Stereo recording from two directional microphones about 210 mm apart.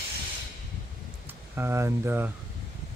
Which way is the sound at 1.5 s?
10° right (ahead or behind).